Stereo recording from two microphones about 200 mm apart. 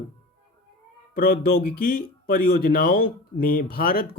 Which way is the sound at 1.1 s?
50° left (ahead or behind).